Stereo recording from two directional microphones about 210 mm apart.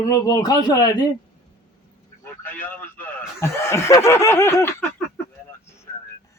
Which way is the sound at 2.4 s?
10° left (ahead or behind).